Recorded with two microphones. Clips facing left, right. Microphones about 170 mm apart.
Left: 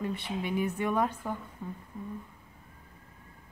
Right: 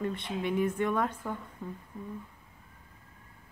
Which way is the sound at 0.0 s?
10° left (ahead or behind).